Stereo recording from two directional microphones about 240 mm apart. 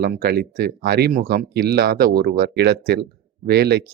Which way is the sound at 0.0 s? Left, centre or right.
Right.